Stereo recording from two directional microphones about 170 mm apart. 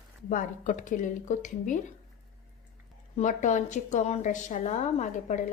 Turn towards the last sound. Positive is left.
turn(degrees=45)  # may be behind; listen again after turning